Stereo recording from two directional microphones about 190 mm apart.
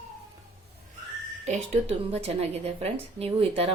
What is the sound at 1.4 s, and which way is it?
A woman's voice, 35° right (ahead or behind).